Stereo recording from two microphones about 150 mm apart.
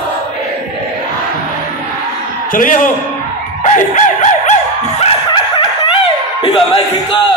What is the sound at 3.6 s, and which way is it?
Dog, 55° left (ahead or behind).